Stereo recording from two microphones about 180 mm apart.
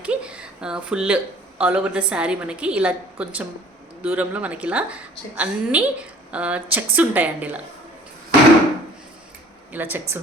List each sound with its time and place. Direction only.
0.0 s a woman's voice: 5° right (ahead or behind)
9.7 s a woman's voice: 10° right (ahead or behind)